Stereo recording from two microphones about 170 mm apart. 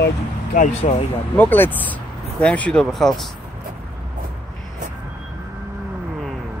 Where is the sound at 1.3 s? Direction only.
10° left (ahead or behind).